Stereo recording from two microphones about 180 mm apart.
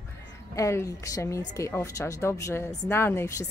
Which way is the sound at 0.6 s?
15° left (ahead or behind).